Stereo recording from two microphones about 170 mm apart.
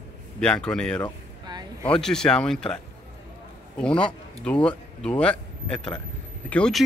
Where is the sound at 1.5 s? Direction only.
25° right (ahead or behind).